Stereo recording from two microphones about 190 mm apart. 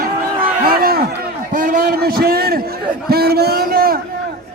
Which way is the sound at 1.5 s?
45° right (ahead or behind).